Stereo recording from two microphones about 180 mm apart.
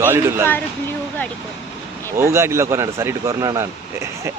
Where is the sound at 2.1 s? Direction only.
15° right (ahead or behind).